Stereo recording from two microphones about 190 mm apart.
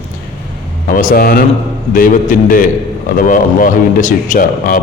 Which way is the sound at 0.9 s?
45° left (ahead or behind).